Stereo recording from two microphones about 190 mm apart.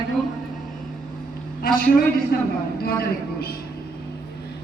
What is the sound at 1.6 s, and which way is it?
Speech, 50° left (ahead or behind).